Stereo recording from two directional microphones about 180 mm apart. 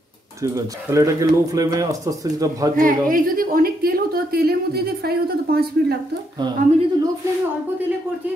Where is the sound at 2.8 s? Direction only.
50° right (ahead or behind).